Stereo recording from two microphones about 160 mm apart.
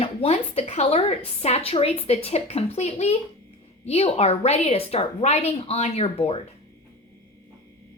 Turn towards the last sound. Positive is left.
turn(degrees=40)  # may be behind; listen again after turning